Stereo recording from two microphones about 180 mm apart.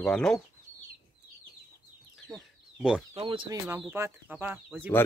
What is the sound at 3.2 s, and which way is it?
Speech, 30° right (ahead or behind).